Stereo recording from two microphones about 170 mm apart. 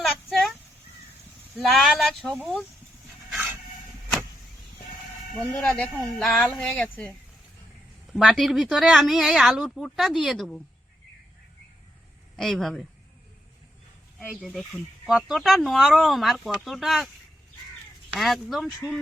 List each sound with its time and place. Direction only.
0.0 s a sound: centre (ahead or behind)
1.5 s speech: centre (ahead or behind)
5.4 s speech: 5° left (ahead or behind)
8.1 s speech: centre (ahead or behind)
12.4 s speech: centre (ahead or behind)
14.2 s speech: 5° right (ahead or behind)
18.1 s speech: centre (ahead or behind)